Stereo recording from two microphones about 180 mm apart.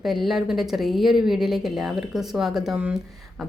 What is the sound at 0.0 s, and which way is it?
A woman's voice, centre (ahead or behind).